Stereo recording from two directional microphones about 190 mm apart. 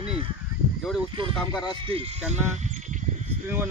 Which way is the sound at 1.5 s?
20° left (ahead or behind).